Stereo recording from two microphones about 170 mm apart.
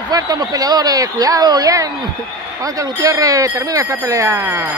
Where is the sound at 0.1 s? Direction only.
20° right (ahead or behind).